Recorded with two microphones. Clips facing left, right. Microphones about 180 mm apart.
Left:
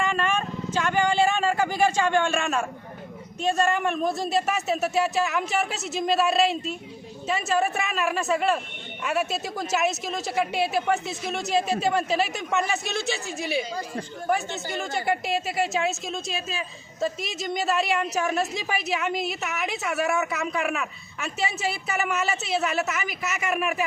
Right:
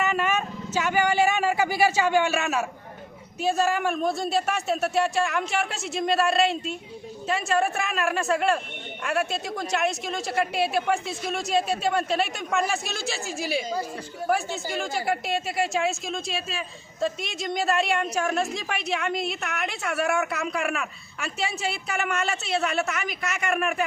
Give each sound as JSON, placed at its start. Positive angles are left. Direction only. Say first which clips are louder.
{"t": 0.0, "sound": "vehicle", "louder": "even", "side_deg": -5}
{"t": 3.4, "sound": "a woman's voice", "louder": "even", "side_deg": 0}